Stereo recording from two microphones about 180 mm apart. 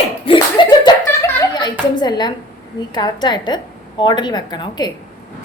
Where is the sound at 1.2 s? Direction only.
20° left (ahead or behind).